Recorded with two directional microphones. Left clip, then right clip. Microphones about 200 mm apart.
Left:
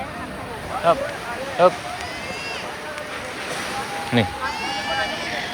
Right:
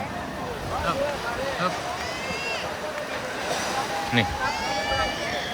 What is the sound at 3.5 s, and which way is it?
Vehicle, 55° right (ahead or behind).